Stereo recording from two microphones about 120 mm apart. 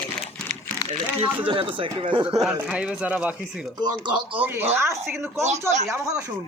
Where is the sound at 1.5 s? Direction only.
45° right (ahead or behind).